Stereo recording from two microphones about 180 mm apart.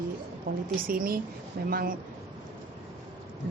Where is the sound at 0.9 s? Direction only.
55° right (ahead or behind).